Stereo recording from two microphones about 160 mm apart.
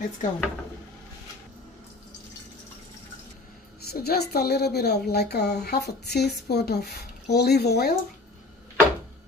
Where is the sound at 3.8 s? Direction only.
80° left.